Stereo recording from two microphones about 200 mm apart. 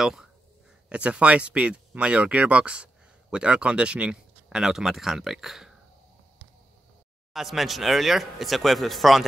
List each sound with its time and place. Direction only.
0.0 s speech: 5° right (ahead or behind)
7.3 s speech: centre (ahead or behind)